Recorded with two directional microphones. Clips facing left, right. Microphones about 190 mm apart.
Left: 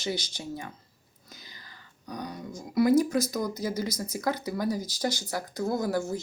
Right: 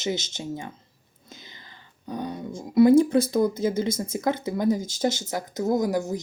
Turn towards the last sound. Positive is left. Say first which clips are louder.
# right 4 dB
turn(degrees=-15)  # may be behind; listen again after turning